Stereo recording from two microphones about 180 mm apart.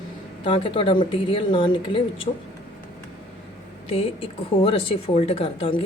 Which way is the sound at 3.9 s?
30° left (ahead or behind).